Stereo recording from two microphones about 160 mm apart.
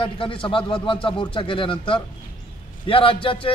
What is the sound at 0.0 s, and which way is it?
A man's voice, 30° left (ahead or behind).